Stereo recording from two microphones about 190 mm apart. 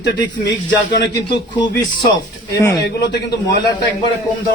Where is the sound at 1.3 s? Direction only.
25° left (ahead or behind).